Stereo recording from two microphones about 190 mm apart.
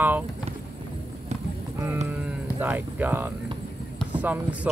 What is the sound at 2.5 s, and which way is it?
Speech, 10° right (ahead or behind).